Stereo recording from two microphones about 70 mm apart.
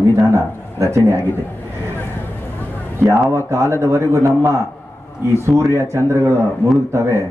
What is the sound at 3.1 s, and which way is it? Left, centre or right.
A man's voice, right.